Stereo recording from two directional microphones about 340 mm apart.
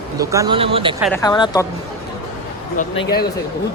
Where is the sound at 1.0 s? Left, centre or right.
Centre.